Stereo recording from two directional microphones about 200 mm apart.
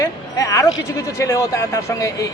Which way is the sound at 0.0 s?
15° left (ahead or behind).